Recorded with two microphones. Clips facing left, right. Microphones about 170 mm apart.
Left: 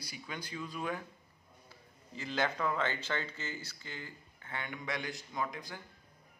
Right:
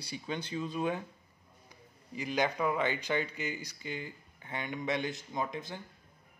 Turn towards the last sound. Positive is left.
turn(degrees=-20)  # may be behind; listen again after turning